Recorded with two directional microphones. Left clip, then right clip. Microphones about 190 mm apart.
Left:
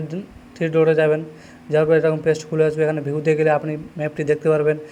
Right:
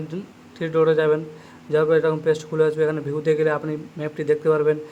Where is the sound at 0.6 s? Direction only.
5° left (ahead or behind).